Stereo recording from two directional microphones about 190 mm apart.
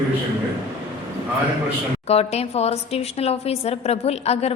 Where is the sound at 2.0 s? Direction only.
30° left (ahead or behind).